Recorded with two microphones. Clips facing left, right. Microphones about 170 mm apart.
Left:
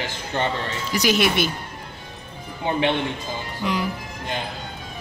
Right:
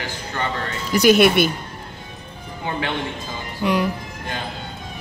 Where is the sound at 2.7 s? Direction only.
20° left (ahead or behind).